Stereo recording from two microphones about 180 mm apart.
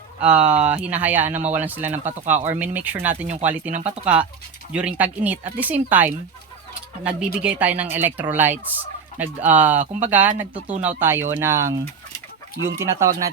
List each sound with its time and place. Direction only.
0.2 s speech: 5° right (ahead or behind)
3.7 s speech: 40° right (ahead or behind)
4.0 s speech: 5° right (ahead or behind)